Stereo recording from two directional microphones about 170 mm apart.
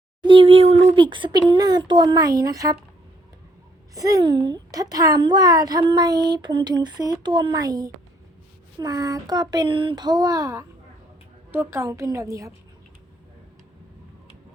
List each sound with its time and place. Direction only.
0.2 s speech: 30° right (ahead or behind)
3.9 s a woman's voice: 20° right (ahead or behind)